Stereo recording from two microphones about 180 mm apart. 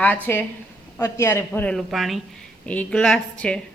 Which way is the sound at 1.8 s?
Centre (ahead or behind).